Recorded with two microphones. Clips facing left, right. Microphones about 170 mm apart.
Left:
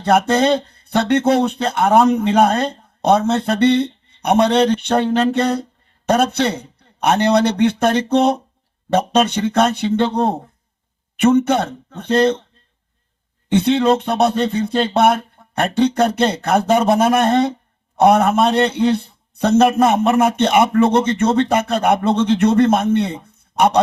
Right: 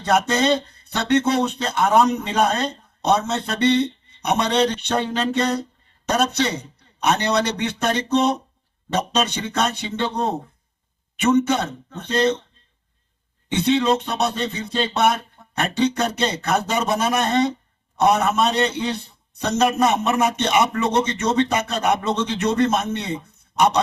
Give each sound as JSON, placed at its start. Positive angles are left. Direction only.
{"t": 0.0, "sound": "a man's voice", "side_deg": 55}
{"t": 11.2, "sound": "a man's voice", "side_deg": 55}
{"t": 13.5, "sound": "a man's voice", "side_deg": 55}